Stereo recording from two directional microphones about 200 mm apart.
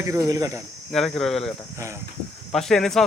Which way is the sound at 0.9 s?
Centre (ahead or behind).